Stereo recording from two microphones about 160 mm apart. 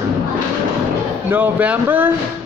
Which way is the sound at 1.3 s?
10° right (ahead or behind).